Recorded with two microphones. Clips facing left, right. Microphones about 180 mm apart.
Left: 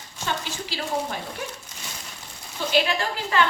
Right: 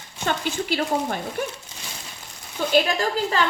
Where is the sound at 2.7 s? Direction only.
40° right (ahead or behind).